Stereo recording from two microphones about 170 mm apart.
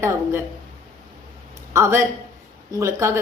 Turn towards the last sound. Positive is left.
turn(degrees=-15)  # may be behind; listen again after turning